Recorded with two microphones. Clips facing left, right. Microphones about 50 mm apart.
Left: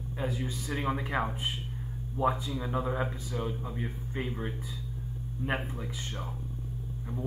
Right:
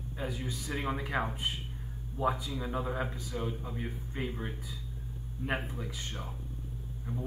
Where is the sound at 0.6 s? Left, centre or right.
Centre.